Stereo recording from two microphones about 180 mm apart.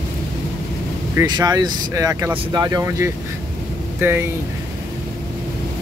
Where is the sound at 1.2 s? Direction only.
20° right (ahead or behind).